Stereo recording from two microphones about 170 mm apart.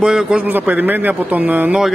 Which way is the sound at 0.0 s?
5° right (ahead or behind).